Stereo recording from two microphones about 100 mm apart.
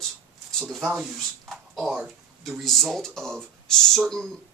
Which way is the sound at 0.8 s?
5° right (ahead or behind).